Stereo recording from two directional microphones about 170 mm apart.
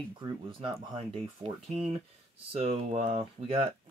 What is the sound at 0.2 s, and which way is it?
Speech, 30° right (ahead or behind).